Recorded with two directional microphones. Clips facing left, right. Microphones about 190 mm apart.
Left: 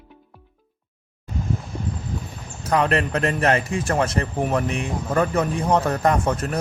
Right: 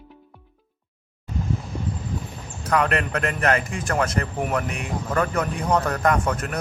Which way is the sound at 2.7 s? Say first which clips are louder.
Left 2 dB; 30° left (ahead or behind).